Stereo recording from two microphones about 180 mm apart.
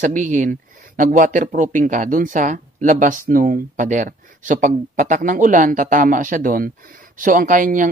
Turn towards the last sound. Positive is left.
turn(degrees=-50)  # may be behind; listen again after turning